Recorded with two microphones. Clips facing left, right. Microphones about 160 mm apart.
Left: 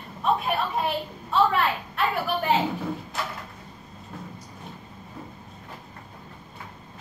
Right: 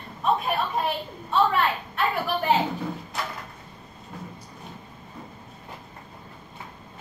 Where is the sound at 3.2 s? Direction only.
Centre (ahead or behind).